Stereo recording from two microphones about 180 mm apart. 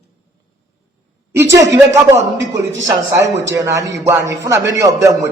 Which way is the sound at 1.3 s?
15° right (ahead or behind).